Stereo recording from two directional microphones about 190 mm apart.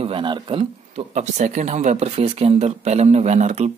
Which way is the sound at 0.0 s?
25° right (ahead or behind).